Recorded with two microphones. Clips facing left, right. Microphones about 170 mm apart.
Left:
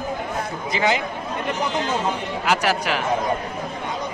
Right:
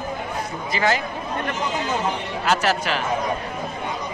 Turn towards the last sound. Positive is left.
turn(degrees=10)  # may be behind; listen again after turning